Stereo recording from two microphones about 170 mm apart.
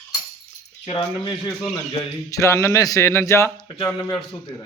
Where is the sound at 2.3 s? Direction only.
15° left (ahead or behind).